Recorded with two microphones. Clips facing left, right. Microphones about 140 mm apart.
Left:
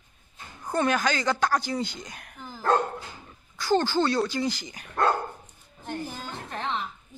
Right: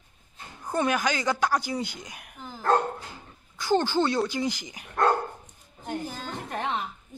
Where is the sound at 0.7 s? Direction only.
10° right (ahead or behind).